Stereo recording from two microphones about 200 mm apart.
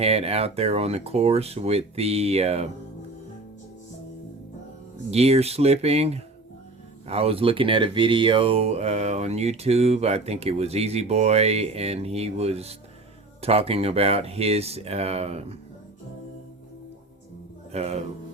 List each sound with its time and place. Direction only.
0.0 s speech: 30° right (ahead or behind)
5.1 s speech: 30° right (ahead or behind)
17.7 s speech: 30° right (ahead or behind)